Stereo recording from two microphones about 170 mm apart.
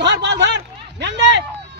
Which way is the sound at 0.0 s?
90° right.